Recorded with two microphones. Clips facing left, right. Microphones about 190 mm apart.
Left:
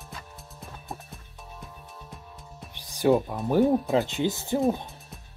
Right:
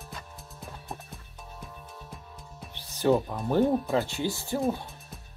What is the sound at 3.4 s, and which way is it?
Speech, 5° left (ahead or behind).